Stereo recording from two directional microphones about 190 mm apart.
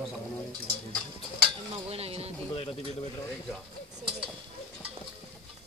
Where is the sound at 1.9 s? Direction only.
30° right (ahead or behind).